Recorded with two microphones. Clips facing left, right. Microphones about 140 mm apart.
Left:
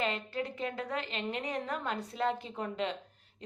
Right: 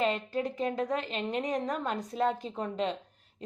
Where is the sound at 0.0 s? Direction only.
40° right (ahead or behind).